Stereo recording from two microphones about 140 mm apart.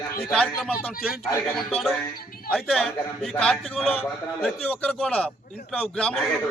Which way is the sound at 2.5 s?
Centre (ahead or behind).